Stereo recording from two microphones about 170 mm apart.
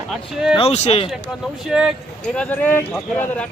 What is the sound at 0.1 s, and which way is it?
Speech, 5° right (ahead or behind).